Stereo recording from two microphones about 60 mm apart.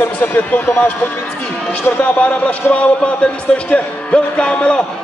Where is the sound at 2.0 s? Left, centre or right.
Left.